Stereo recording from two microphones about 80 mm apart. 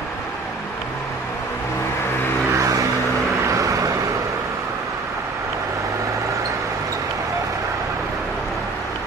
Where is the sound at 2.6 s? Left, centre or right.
Right.